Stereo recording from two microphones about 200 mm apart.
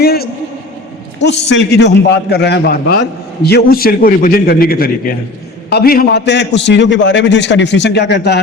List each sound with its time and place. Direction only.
0.0 s a man's voice: 50° left (ahead or behind)